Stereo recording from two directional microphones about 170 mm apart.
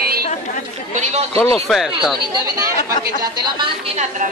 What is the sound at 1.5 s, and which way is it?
Speech, centre (ahead or behind).